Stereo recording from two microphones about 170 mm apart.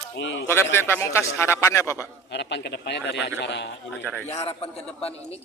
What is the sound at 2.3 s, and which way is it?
A man's voice, 90° left.